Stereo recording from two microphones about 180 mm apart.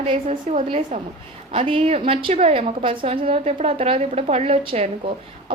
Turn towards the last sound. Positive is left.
turn(degrees=-35)  # may be behind; listen again after turning